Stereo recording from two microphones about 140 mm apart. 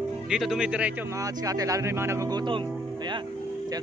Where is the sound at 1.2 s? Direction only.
25° right (ahead or behind).